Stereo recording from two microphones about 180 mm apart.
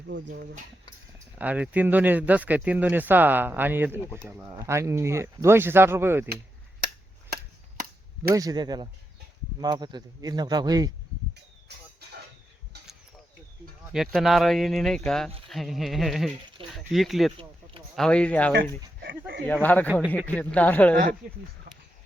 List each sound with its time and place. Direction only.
0.1 s speech: 80° right
1.4 s speech: 10° right (ahead or behind)
4.0 s speech: 10° left (ahead or behind)
4.3 s speech: 10° right (ahead or behind)
8.3 s speech: 20° right (ahead or behind)
13.9 s speech: centre (ahead or behind)
19.6 s speech: 10° left (ahead or behind)